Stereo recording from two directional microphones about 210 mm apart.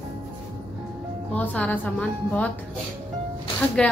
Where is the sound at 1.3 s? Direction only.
5° left (ahead or behind).